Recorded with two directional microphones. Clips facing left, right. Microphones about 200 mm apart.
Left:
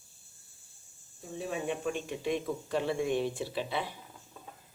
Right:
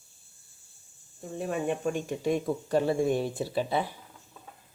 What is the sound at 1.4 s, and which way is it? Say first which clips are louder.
Speech: right 4 dB; 50° right (ahead or behind).